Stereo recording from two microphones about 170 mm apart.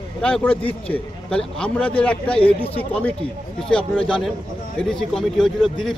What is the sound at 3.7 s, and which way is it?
Speech, 5° left (ahead or behind).